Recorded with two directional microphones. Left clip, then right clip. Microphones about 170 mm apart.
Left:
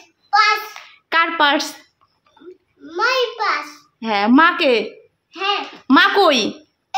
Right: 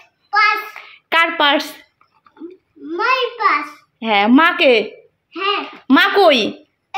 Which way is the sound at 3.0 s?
25° left (ahead or behind).